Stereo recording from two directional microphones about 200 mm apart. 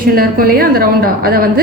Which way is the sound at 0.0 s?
45° right (ahead or behind).